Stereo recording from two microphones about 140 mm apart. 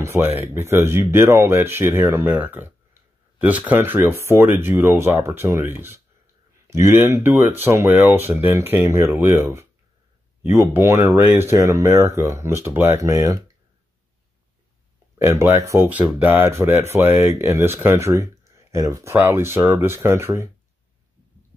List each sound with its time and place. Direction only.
0.0 s speech: 15° right (ahead or behind)
15.1 s speech: 20° right (ahead or behind)